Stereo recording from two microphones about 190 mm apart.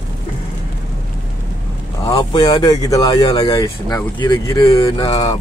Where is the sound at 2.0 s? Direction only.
20° left (ahead or behind).